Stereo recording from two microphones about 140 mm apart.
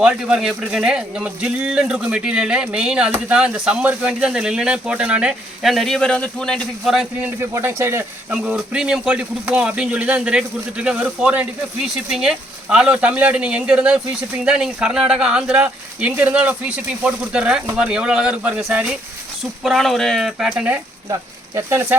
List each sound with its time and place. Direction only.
0.0 s speech: 5° right (ahead or behind)
7.3 s speech: 20° right (ahead or behind)
8.3 s speech: 5° right (ahead or behind)
21.1 s speech: 20° right (ahead or behind)